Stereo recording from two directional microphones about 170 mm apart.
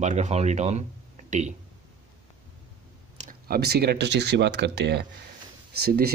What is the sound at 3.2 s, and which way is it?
Speech, 55° right (ahead or behind).